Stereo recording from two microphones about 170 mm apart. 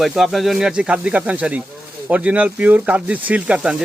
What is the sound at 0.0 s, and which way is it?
Speech, centre (ahead or behind).